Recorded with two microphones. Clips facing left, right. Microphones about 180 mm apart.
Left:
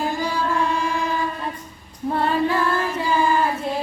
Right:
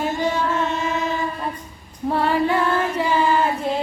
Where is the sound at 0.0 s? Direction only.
20° right (ahead or behind).